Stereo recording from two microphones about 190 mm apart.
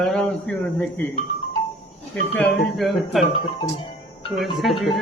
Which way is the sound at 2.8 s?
Centre (ahead or behind).